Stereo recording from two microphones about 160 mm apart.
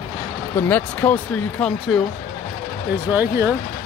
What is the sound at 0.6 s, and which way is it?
Speech, 10° left (ahead or behind).